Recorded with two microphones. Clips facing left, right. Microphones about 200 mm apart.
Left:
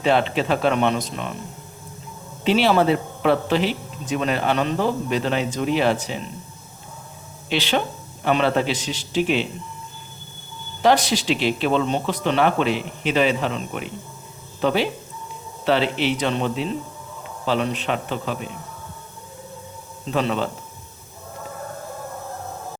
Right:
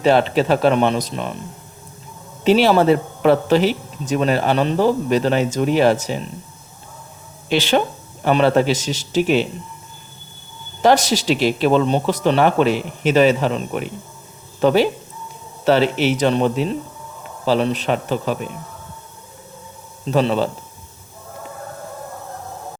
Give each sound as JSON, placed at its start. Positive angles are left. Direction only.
{"t": 0.0, "sound": "speech", "side_deg": -40}
{"t": 2.4, "sound": "speech", "side_deg": -40}
{"t": 7.5, "sound": "a man's voice", "side_deg": -45}
{"t": 10.8, "sound": "a man's voice", "side_deg": -45}
{"t": 20.1, "sound": "speech", "side_deg": -35}